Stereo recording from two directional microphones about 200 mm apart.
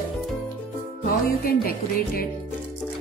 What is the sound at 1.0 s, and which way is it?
A woman's voice, 45° left (ahead or behind).